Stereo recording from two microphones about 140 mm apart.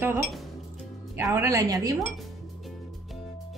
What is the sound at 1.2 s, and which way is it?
Speech, 20° right (ahead or behind).